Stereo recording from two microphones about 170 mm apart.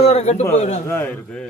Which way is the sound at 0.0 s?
40° left (ahead or behind).